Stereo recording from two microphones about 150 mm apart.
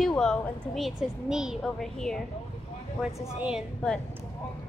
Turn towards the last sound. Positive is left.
turn(degrees=-5)  # may be behind; listen again after turning